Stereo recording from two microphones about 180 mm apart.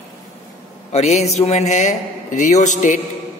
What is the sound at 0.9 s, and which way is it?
A man's voice, 40° left (ahead or behind).